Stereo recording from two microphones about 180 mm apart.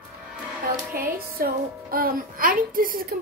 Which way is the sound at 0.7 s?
55° right (ahead or behind).